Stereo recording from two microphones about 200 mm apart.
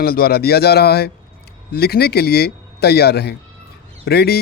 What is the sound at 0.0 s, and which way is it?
Speech, 50° left (ahead or behind).